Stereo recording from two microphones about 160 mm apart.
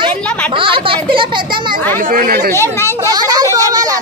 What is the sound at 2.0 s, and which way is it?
Speech, 60° right (ahead or behind).